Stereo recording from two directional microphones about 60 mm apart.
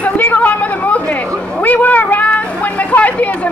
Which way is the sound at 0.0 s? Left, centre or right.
Left.